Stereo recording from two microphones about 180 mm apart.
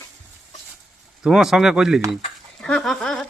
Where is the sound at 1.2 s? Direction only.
Centre (ahead or behind).